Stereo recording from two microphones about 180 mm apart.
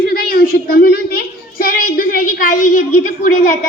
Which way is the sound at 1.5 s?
50° left (ahead or behind).